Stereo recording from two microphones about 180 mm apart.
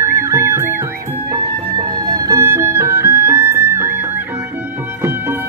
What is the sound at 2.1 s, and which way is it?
Music, 15° right (ahead or behind).